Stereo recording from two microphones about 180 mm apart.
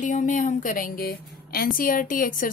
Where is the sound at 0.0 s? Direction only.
45° left (ahead or behind).